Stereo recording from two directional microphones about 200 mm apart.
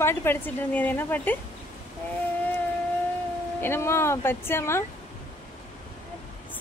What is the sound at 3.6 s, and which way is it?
Speech, 10° left (ahead or behind).